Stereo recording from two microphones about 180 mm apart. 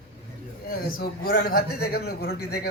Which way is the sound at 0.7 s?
55° left (ahead or behind).